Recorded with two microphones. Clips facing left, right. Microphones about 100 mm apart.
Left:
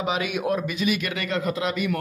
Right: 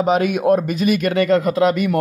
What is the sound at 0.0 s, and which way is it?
Speech, 45° right (ahead or behind).